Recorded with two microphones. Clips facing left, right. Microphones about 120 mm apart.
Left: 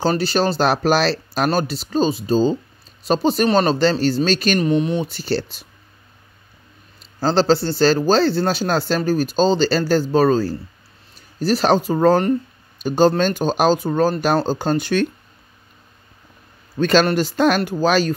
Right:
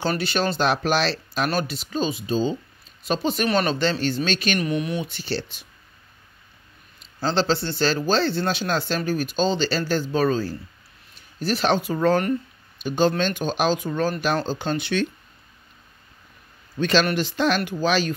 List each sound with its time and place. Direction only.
0.0 s speech: 35° left (ahead or behind)
7.2 s speech: 40° left (ahead or behind)
16.7 s speech: 45° left (ahead or behind)